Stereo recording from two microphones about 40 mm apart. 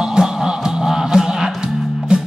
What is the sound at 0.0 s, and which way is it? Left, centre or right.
Music, centre.